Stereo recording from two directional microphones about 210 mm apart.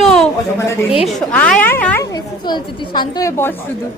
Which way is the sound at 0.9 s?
Centre (ahead or behind).